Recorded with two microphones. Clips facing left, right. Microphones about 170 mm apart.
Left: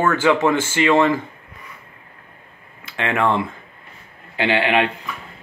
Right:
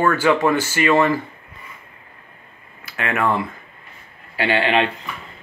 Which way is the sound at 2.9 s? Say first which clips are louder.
Left 2 dB; 25° left (ahead or behind).